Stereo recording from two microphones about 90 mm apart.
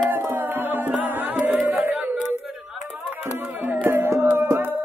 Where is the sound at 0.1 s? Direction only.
25° right (ahead or behind).